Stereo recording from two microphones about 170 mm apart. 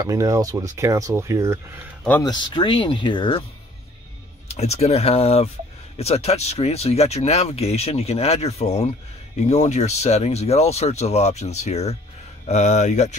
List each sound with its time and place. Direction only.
0.0 s speech: 20° right (ahead or behind)
2.2 s speech: 30° left (ahead or behind)
4.5 s speech: 40° left (ahead or behind)